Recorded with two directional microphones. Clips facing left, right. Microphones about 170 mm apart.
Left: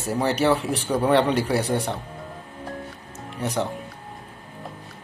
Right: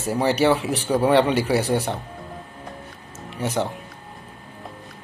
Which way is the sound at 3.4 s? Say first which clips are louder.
Right 2 dB; centre (ahead or behind).